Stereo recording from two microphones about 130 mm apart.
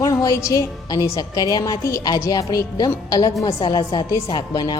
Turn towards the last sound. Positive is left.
turn(degrees=30)  # may be behind; listen again after turning